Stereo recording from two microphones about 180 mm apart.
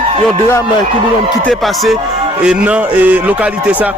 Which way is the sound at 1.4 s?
Centre (ahead or behind).